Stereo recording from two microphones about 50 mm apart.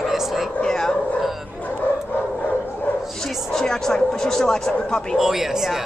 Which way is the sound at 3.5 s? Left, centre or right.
Centre.